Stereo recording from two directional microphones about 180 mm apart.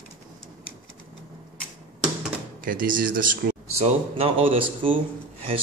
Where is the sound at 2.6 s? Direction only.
50° right (ahead or behind).